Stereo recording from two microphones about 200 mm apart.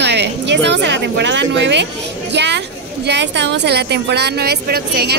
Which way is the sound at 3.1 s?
60° right (ahead or behind).